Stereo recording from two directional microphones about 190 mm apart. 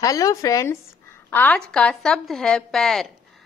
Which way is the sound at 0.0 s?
20° left (ahead or behind).